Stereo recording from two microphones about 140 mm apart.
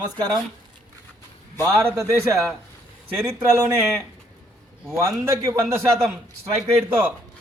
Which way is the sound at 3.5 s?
20° right (ahead or behind).